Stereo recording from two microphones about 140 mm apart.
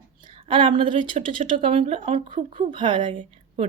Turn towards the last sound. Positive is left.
turn(degrees=-40)  # may be behind; listen again after turning